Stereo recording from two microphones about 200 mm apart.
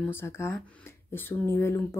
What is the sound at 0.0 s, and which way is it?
Speech, 10° left (ahead or behind).